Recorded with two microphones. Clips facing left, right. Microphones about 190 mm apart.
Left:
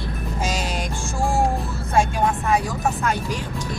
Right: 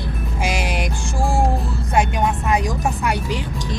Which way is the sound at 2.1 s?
15° right (ahead or behind).